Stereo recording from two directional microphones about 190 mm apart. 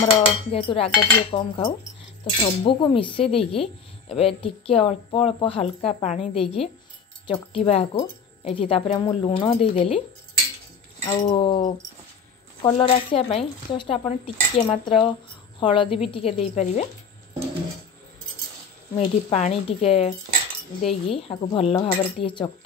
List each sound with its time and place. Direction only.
0.0 s a woman's voice: 30° left (ahead or behind)
11.1 s a woman's voice: 30° left (ahead or behind)
19.3 s a woman's voice: 35° left (ahead or behind)